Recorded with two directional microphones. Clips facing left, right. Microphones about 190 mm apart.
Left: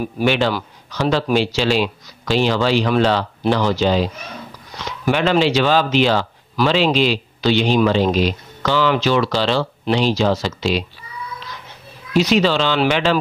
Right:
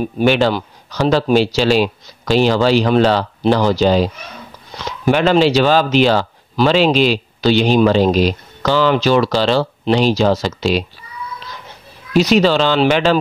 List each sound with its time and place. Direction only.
0.2 s speech: 40° right (ahead or behind)
5.3 s speech: 40° right (ahead or behind)
12.1 s speech: 40° right (ahead or behind)